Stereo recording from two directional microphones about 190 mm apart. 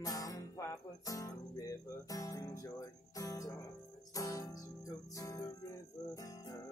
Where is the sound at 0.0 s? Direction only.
20° left (ahead or behind).